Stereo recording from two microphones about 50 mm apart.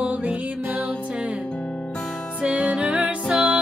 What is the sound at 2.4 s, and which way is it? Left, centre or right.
Music, right.